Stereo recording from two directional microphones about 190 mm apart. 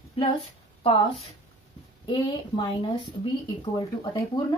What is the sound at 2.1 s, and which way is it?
Speech, 25° left (ahead or behind).